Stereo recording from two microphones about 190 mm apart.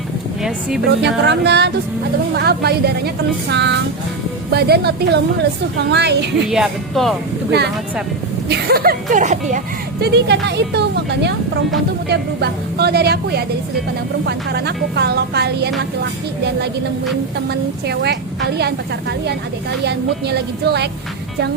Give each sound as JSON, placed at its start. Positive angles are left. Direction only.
{"t": 0.9, "sound": "a woman's voice", "side_deg": -65}
{"t": 6.5, "sound": "speech", "side_deg": 0}
{"t": 8.4, "sound": "speech", "side_deg": -55}
{"t": 10.0, "sound": "a woman's voice", "side_deg": -60}
{"t": 17.5, "sound": "a woman's voice", "side_deg": -60}
{"t": 19.8, "sound": "a woman's voice", "side_deg": -60}